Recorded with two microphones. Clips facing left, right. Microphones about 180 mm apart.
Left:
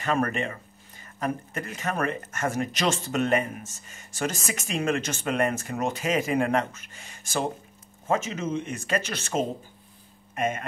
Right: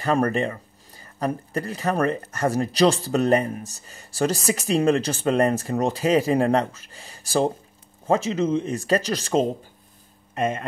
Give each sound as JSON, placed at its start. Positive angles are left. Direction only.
{"t": 0.0, "sound": "speech", "side_deg": -35}